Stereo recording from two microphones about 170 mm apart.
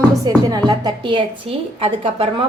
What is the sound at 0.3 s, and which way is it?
A woman's voice, 20° right (ahead or behind).